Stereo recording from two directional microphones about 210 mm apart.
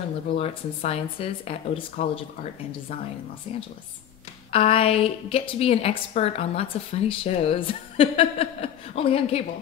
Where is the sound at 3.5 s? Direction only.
30° left (ahead or behind).